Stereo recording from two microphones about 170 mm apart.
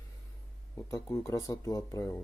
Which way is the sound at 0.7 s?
15° left (ahead or behind).